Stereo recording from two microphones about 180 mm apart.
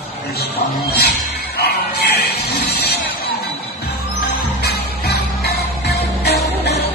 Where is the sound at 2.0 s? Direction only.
60° left (ahead or behind).